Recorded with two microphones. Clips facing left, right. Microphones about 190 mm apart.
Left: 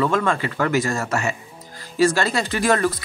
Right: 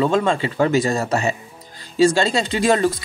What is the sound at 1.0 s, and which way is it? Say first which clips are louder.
Speech: right 3 dB; 35° right (ahead or behind).